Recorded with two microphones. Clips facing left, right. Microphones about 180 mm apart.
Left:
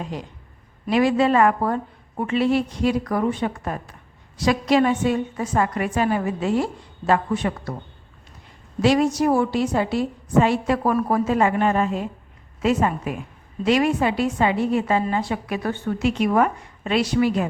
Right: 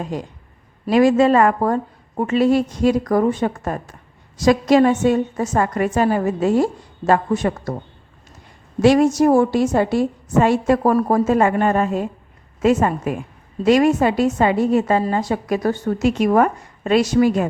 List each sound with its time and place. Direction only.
0.0 s a woman's voice: 45° right (ahead or behind)
8.8 s a woman's voice: 50° right (ahead or behind)